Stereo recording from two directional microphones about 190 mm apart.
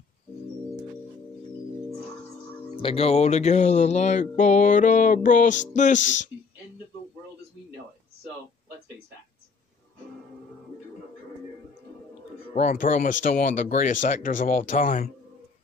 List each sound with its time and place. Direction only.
2.7 s music: 30° left (ahead or behind)
12.5 s speech: 40° left (ahead or behind)